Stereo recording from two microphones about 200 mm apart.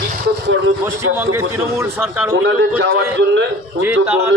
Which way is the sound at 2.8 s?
60° right (ahead or behind).